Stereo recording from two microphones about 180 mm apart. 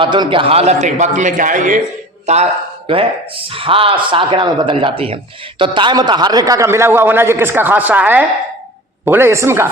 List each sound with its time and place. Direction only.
0.0 s a man's voice: 25° right (ahead or behind)